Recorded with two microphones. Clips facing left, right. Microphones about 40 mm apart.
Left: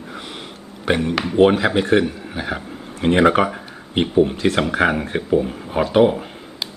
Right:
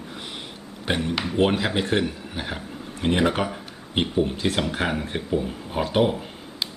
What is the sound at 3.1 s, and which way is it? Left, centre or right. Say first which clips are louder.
Speech: left 9 dB; left.